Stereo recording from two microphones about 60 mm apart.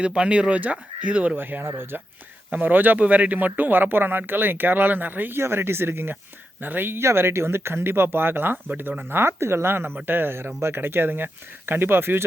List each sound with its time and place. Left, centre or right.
0.0 s speech: centre
1.4 s speech: right
2.5 s speech: right
5.4 s speech: right